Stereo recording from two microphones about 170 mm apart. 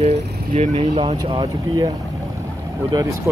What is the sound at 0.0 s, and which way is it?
Speech, 35° right (ahead or behind).